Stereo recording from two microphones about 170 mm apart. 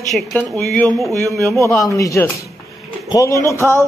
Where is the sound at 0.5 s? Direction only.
Centre (ahead or behind).